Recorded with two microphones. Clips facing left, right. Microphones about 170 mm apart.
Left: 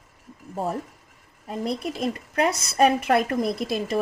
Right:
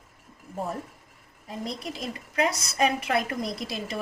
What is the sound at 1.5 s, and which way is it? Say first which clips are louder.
A woman's voice: left 6 dB; 55° left (ahead or behind).